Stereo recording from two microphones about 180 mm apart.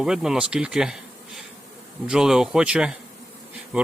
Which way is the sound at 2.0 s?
5° right (ahead or behind).